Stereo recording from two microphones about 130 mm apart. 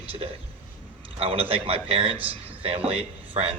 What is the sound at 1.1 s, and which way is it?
A man's voice, 50° right (ahead or behind).